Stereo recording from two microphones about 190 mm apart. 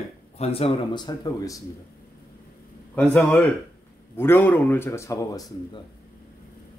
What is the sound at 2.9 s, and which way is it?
A man's voice, 5° left (ahead or behind).